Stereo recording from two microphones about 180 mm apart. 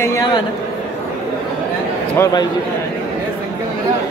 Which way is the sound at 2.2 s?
20° left (ahead or behind).